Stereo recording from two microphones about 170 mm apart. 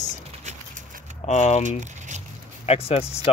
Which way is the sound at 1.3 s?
40° left (ahead or behind).